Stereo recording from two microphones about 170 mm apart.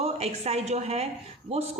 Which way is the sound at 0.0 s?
40° right (ahead or behind).